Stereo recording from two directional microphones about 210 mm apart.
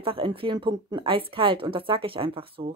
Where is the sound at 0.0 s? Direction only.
25° right (ahead or behind).